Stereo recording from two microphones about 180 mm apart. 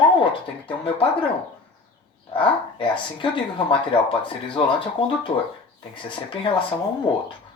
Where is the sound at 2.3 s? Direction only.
30° left (ahead or behind).